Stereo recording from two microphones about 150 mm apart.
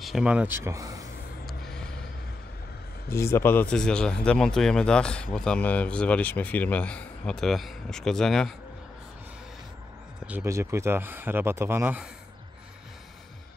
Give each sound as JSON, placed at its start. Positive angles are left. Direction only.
{"t": 0.0, "sound": "speech", "side_deg": -5}
{"t": 1.4, "sound": "vehicle", "side_deg": 0}
{"t": 3.1, "sound": "speech", "side_deg": 20}
{"t": 10.2, "sound": "speech", "side_deg": -15}